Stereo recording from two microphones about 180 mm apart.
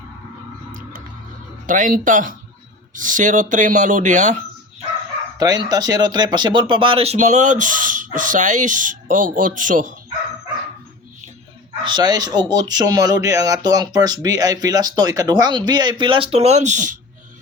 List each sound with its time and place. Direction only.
1.6 s speech: 45° right (ahead or behind)
5.4 s speech: 20° right (ahead or behind); by 10.0 s 45° right (ahead or behind)
11.8 s speech: 25° right (ahead or behind); by 17.0 s 45° right (ahead or behind)